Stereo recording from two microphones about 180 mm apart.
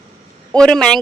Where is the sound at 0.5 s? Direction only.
5° left (ahead or behind).